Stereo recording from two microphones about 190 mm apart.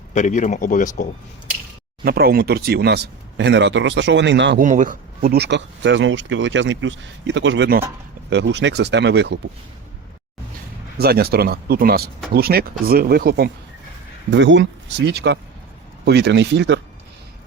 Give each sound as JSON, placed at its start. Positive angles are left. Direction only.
{"t": 0.1, "sound": "speech", "side_deg": 40}
{"t": 2.0, "sound": "speech", "side_deg": -55}
{"t": 4.6, "sound": "speech", "side_deg": -40}
{"t": 10.9, "sound": "speech", "side_deg": -55}
{"t": 14.3, "sound": "speech", "side_deg": -70}